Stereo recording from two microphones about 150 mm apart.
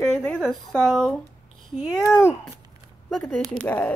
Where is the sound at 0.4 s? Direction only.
Centre (ahead or behind).